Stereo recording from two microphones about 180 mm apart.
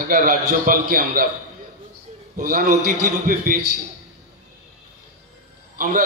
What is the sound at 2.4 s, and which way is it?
A man's voice, 45° right (ahead or behind).